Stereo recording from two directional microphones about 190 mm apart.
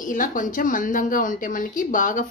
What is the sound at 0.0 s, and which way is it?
A woman's voice, 45° left (ahead or behind).